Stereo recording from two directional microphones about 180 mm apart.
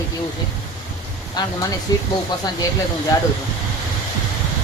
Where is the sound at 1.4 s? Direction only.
20° left (ahead or behind).